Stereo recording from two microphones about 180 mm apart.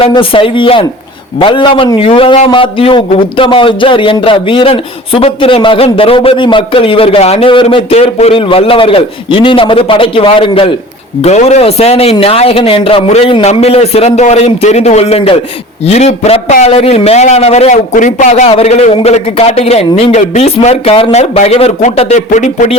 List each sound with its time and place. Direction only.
0.0 s a man's voice: 30° left (ahead or behind)